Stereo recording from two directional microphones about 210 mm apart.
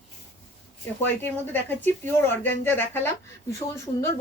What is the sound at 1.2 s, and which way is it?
Speech, 10° left (ahead or behind).